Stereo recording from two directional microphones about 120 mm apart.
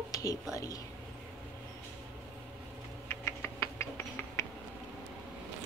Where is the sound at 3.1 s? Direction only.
20° left (ahead or behind).